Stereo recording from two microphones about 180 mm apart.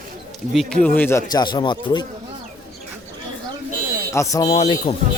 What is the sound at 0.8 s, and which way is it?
Speech, 10° left (ahead or behind).